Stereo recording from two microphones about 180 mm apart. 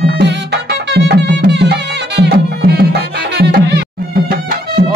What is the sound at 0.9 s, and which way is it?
Music, 65° right (ahead or behind).